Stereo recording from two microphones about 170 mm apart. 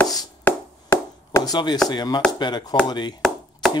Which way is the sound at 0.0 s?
15° left (ahead or behind).